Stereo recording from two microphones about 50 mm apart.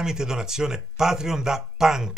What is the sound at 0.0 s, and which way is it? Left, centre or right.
Speech, centre.